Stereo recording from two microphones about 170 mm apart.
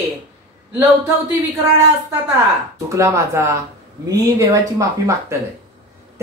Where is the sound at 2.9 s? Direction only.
20° right (ahead or behind).